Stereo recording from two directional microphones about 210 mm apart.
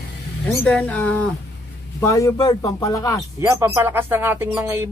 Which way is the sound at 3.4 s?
10° right (ahead or behind).